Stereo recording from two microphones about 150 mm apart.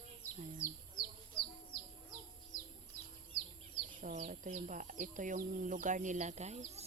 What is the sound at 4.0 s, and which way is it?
Speech, 65° right (ahead or behind).